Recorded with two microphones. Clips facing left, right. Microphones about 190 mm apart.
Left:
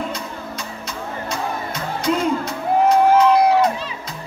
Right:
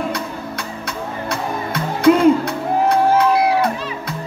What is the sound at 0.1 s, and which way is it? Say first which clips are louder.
Music: right 4 dB; 60° right (ahead or behind).